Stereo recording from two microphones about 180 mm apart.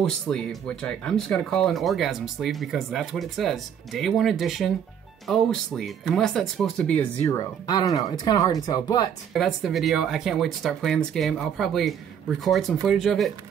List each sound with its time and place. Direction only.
0.0 s speech: 5° left (ahead or behind)
7.2 s speech: 20° left (ahead or behind)
9.3 s speech: centre (ahead or behind)